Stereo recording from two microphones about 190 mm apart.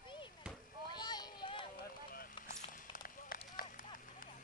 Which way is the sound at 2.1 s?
50° left (ahead or behind).